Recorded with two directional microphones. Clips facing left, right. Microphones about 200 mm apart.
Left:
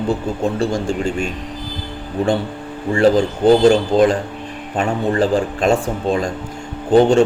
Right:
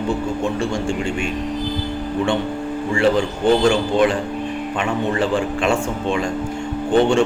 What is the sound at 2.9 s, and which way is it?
A man's voice, 35° left (ahead or behind).